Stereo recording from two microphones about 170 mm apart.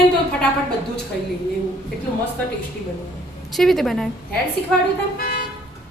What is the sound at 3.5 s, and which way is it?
Speech, centre (ahead or behind).